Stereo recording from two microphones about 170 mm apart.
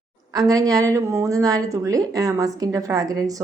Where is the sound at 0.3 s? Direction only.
20° right (ahead or behind).